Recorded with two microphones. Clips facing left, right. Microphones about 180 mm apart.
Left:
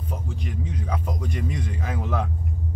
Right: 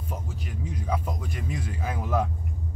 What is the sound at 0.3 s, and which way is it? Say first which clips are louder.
Speech: left 4 dB; 5° right (ahead or behind).